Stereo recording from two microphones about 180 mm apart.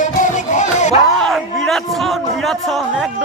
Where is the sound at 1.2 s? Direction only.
5° left (ahead or behind).